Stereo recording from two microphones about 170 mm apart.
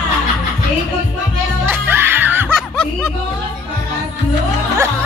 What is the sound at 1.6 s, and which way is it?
Music, 15° right (ahead or behind).